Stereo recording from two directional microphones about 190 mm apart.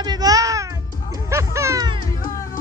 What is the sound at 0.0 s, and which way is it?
Music, 20° right (ahead or behind).